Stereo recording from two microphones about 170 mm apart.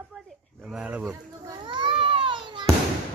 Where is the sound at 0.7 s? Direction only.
5° right (ahead or behind).